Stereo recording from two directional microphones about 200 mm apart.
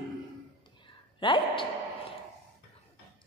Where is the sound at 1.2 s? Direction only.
25° left (ahead or behind).